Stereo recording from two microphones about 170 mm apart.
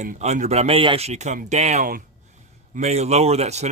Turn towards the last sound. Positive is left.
turn(degrees=-40)  # may be behind; listen again after turning